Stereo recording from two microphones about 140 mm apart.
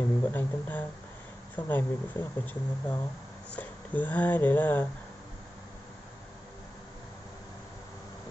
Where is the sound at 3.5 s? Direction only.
10° left (ahead or behind).